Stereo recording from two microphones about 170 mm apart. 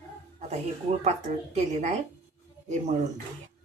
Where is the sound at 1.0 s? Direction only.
40° right (ahead or behind).